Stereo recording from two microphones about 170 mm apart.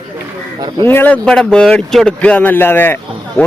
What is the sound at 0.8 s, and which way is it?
Speech, 10° left (ahead or behind).